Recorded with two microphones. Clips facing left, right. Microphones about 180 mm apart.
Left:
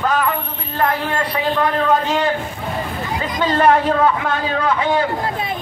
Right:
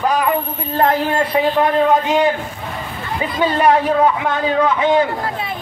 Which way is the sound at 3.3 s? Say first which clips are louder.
Even; 10° right (ahead or behind).